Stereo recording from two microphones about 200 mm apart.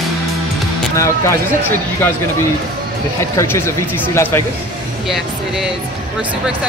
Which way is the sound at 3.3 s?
10° left (ahead or behind).